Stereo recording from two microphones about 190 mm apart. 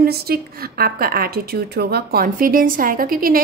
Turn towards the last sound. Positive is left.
turn(degrees=-50)  # may be behind; listen again after turning